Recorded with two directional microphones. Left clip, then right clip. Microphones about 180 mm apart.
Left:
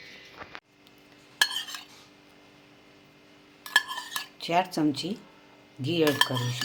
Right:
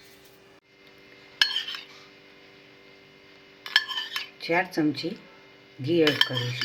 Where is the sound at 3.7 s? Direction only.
35° left (ahead or behind).